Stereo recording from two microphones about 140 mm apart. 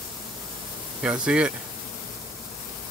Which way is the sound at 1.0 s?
5° right (ahead or behind).